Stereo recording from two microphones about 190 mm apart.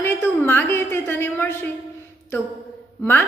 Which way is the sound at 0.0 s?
10° left (ahead or behind).